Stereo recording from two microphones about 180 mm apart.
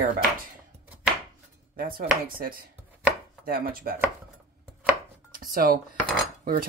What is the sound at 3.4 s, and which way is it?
Chopping, 55° right (ahead or behind).